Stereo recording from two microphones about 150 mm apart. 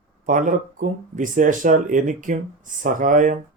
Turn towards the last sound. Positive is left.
turn(degrees=-60)  # may be behind; listen again after turning